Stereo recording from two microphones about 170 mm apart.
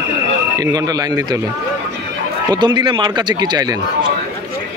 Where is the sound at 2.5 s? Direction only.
25° right (ahead or behind).